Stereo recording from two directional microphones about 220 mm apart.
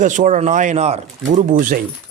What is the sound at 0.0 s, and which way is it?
A man's voice, 35° right (ahead or behind).